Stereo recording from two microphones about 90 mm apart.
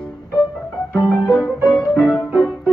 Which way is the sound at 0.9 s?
50° left (ahead or behind).